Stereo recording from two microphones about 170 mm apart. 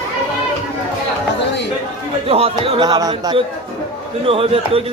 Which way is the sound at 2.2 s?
35° right (ahead or behind).